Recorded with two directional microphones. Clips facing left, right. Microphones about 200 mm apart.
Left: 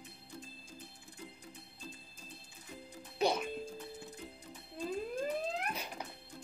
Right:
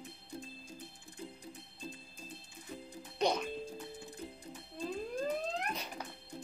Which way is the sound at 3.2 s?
5° left (ahead or behind).